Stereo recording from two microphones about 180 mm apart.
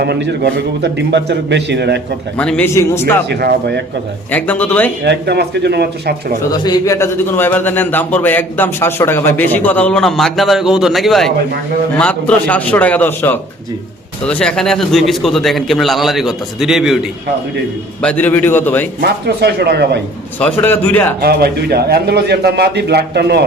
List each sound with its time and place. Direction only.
0.0 s a man's voice: 70° right (ahead or behind)
2.4 s a man's voice: 10° left (ahead or behind)
3.2 s a man's voice: 65° right (ahead or behind)
4.3 s a man's voice: 10° left (ahead or behind)
5.0 s a man's voice: 65° right (ahead or behind)
6.5 s a man's voice: 20° left (ahead or behind); by 17.1 s centre (ahead or behind)
18.0 s a man's voice: 10° left (ahead or behind)
19.0 s a man's voice: 65° right (ahead or behind)
20.4 s a man's voice: 10° left (ahead or behind)
21.2 s a man's voice: 60° right (ahead or behind)